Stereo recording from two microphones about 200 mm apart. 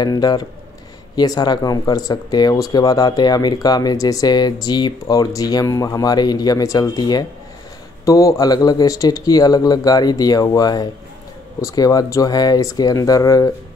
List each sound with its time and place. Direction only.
0.0 s speech: 20° left (ahead or behind)